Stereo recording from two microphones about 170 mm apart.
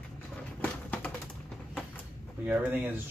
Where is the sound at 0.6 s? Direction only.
10° left (ahead or behind).